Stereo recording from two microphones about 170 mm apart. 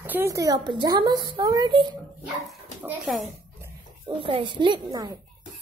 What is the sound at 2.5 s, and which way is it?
Speech, 5° right (ahead or behind).